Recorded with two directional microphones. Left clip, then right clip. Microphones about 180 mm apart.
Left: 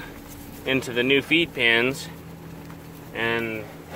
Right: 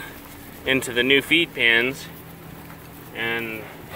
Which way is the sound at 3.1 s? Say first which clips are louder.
Left 1 dB; 25° left (ahead or behind).